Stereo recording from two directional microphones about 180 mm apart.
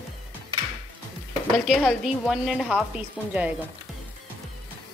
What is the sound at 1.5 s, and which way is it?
A woman's voice, centre (ahead or behind).